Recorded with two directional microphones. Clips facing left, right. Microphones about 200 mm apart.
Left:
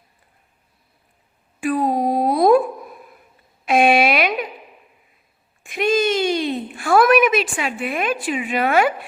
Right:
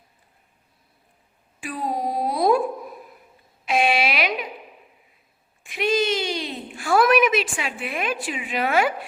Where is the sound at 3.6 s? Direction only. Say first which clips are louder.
Left 6 dB; 50° left (ahead or behind).